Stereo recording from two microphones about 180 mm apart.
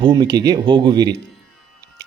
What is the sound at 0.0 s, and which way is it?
Speech, 20° right (ahead or behind).